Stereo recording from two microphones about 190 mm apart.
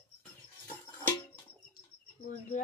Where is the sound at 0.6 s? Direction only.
10° left (ahead or behind).